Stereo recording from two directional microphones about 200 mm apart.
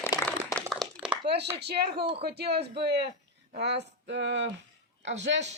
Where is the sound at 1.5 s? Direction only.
55° right (ahead or behind).